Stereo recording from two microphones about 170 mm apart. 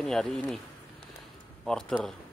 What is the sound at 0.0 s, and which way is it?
Speech, 5° left (ahead or behind).